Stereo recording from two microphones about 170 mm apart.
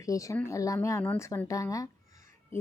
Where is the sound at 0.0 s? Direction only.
20° left (ahead or behind).